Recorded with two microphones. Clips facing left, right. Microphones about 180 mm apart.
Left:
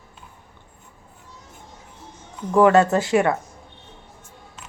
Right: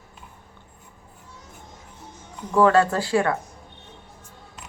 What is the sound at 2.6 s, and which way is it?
Speech, 20° left (ahead or behind).